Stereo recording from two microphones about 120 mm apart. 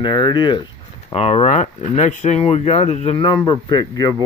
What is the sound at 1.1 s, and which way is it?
Speech, 55° left (ahead or behind).